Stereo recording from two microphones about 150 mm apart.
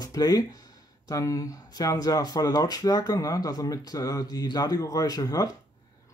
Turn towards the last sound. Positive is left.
turn(degrees=25)  # may be behind; listen again after turning